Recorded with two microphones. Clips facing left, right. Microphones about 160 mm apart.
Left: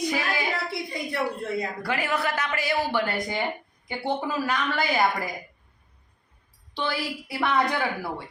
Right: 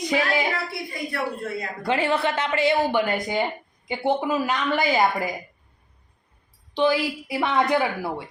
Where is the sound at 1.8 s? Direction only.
25° right (ahead or behind).